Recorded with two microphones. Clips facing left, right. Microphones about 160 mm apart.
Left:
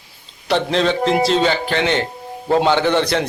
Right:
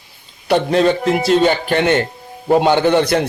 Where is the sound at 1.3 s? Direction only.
50° right (ahead or behind).